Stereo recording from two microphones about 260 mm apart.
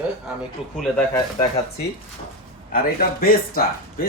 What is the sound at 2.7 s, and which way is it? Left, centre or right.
Speech, left.